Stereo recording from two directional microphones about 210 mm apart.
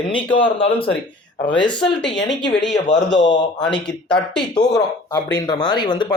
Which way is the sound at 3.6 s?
5° left (ahead or behind).